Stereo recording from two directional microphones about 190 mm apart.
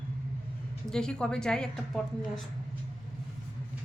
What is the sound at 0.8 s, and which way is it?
Speech, 5° left (ahead or behind).